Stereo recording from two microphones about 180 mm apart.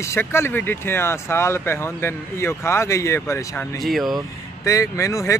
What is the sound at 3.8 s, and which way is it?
Speech, centre (ahead or behind).